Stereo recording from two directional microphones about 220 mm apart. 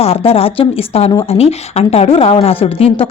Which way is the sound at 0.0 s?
25° left (ahead or behind).